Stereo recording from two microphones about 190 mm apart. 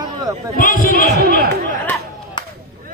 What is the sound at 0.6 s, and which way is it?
Speech, 50° left (ahead or behind).